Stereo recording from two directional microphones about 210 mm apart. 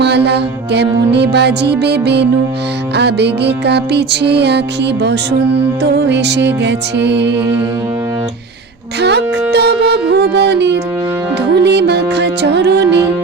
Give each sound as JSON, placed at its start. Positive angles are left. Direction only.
{"t": 0.0, "sound": "music", "side_deg": -55}
{"t": 9.0, "sound": "music", "side_deg": -55}